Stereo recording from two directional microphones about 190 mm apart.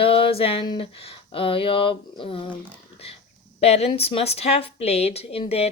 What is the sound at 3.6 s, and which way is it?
A woman's voice, 35° left (ahead or behind).